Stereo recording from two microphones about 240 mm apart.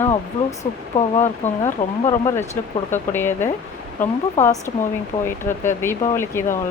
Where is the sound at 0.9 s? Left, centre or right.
Left.